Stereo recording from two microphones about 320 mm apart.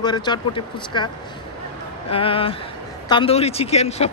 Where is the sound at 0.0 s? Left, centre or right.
Centre.